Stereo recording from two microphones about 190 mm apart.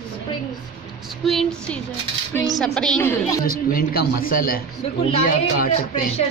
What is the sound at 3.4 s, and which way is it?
Speech, 50° left (ahead or behind).